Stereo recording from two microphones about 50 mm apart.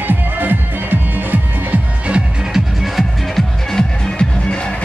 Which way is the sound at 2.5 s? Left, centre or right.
Centre.